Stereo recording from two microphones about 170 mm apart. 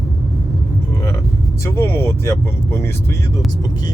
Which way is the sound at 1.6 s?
15° left (ahead or behind).